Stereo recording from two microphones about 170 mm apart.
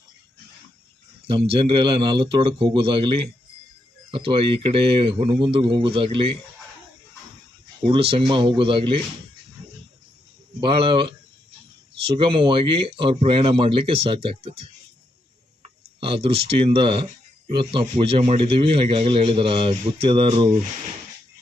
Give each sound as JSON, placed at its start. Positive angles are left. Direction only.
{"t": 1.3, "sound": "a man's voice", "side_deg": -30}
{"t": 7.9, "sound": "a man's voice", "side_deg": -35}
{"t": 10.6, "sound": "a man's voice", "side_deg": -30}
{"t": 16.0, "sound": "a man's voice", "side_deg": -30}